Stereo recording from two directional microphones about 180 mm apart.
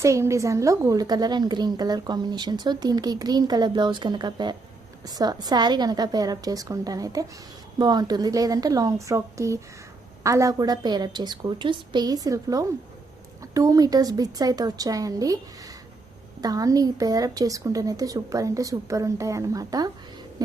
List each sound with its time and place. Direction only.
0.0 s a woman's voice: 15° right (ahead or behind)
16.4 s a woman's voice: 20° right (ahead or behind)